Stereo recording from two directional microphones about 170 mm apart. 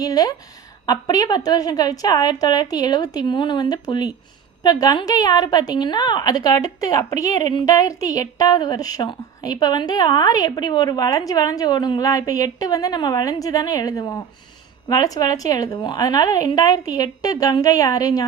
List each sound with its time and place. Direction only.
0.0 s a woman's voice: 20° left (ahead or behind)